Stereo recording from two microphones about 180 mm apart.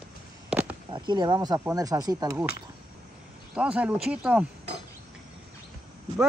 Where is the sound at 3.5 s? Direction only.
5° right (ahead or behind).